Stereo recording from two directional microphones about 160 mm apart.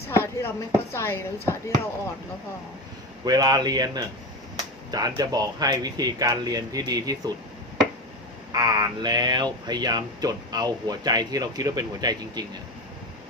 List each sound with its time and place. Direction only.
0.1 s a sound: 15° left (ahead or behind)
0.9 s speech: 15° left (ahead or behind)
3.2 s speech: 25° right (ahead or behind)
8.5 s speech: 25° right (ahead or behind)